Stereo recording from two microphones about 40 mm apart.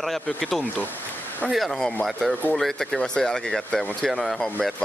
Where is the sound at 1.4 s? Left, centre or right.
Left.